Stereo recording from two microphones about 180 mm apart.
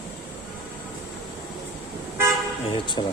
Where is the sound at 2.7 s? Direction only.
25° left (ahead or behind).